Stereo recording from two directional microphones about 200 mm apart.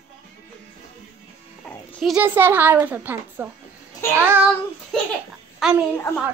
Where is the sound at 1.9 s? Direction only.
5° right (ahead or behind).